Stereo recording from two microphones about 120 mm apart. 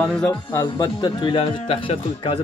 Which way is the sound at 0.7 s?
40° left (ahead or behind).